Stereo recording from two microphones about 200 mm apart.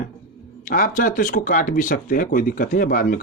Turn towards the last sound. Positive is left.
turn(degrees=45)  # may be behind; listen again after turning